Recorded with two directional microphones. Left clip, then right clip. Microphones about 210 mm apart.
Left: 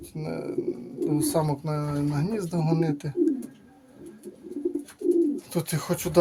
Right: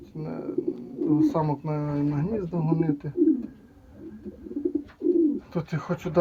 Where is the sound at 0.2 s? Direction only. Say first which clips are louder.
Even; 25° left (ahead or behind).